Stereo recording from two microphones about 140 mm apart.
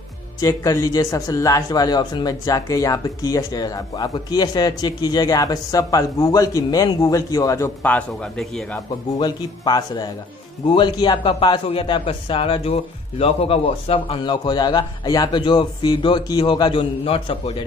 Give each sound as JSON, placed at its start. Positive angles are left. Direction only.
{"t": 0.4, "sound": "speech", "side_deg": 25}
{"t": 7.8, "sound": "a man's voice", "side_deg": 10}
{"t": 9.2, "sound": "a man's voice", "side_deg": 30}